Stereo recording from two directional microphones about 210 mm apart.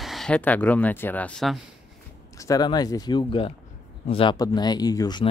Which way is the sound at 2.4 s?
20° left (ahead or behind).